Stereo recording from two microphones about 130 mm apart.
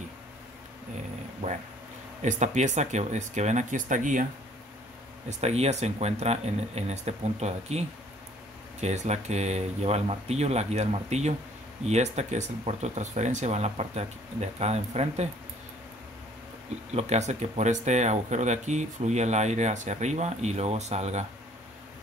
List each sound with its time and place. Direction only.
2.2 s speech: 65° right (ahead or behind)
5.4 s speech: 55° right (ahead or behind)
8.8 s speech: 60° right (ahead or behind)
16.9 s speech: 60° right (ahead or behind)